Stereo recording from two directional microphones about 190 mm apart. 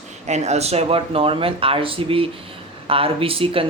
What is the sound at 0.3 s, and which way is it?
Speech, 35° right (ahead or behind).